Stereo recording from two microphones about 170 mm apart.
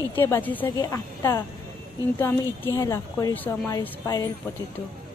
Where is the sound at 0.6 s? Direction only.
20° left (ahead or behind).